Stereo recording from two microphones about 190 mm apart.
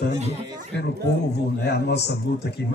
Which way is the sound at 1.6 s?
60° left (ahead or behind).